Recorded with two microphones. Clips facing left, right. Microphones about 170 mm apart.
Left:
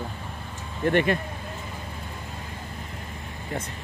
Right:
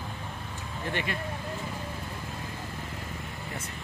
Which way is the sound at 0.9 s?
50° left (ahead or behind).